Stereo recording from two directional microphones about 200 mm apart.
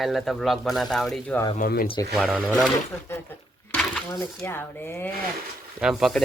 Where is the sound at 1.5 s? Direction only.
45° left (ahead or behind).